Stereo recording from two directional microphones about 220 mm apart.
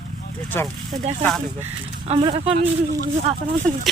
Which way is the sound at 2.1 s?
25° right (ahead or behind).